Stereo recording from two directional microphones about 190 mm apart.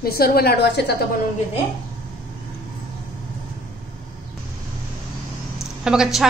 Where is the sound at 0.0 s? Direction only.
50° left (ahead or behind).